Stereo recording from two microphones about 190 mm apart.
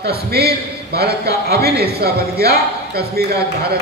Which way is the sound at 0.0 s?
55° right (ahead or behind).